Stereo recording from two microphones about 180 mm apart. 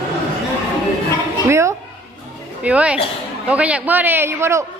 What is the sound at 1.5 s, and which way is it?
A man's voice, 15° right (ahead or behind).